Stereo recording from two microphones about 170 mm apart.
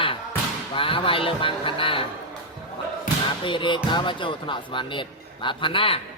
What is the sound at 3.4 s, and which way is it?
Speech, 30° left (ahead or behind).